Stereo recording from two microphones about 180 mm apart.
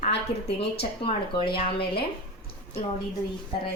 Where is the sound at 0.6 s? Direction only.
30° left (ahead or behind).